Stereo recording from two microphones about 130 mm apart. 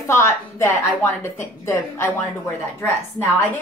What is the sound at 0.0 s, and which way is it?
A woman's voice, 20° left (ahead or behind).